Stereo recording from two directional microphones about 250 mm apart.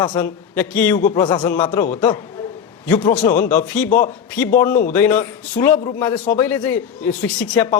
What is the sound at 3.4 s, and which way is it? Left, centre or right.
Speech, centre.